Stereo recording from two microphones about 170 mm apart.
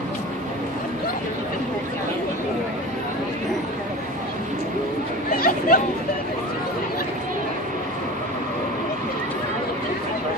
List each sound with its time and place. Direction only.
5.3 s chatter: 60° left (ahead or behind)